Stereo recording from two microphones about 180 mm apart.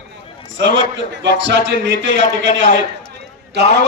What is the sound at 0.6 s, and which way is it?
A man's voice, 85° right.